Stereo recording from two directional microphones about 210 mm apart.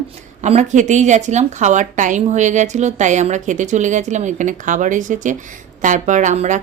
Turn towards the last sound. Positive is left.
turn(degrees=-35)  # may be behind; listen again after turning